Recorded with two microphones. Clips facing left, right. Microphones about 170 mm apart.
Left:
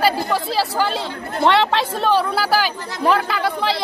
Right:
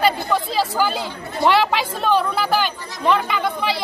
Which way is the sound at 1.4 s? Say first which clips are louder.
Left 1 dB; 25° left (ahead or behind).